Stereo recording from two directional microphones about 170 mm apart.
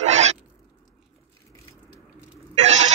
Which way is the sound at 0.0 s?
40° right (ahead or behind).